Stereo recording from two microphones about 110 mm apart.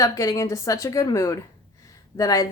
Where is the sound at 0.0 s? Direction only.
30° left (ahead or behind).